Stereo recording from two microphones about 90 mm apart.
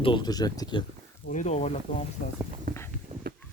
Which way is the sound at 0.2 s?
45° left (ahead or behind).